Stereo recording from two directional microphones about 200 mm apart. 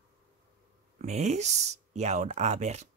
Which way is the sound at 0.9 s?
35° right (ahead or behind).